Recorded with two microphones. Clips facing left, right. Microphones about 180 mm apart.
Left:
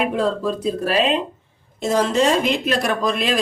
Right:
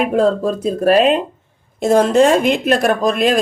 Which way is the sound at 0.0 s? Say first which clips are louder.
Right 5 dB; 45° right (ahead or behind).